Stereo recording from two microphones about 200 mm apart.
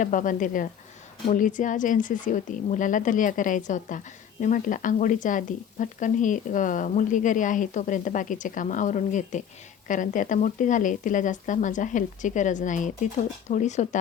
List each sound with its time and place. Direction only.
0.0 s a woman's voice: 40° left (ahead or behind)